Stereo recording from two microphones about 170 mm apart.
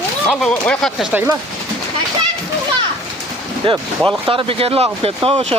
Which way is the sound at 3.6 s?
30° right (ahead or behind).